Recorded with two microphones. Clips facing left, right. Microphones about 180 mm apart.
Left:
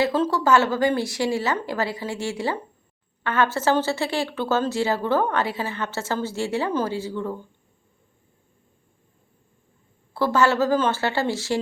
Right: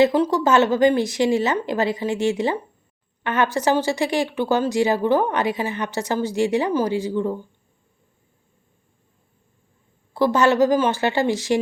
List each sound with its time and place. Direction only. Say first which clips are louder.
0.0 s a woman's voice: right 4 dB; 15° right (ahead or behind)
10.2 s a woman's voice: right 3 dB; 15° right (ahead or behind)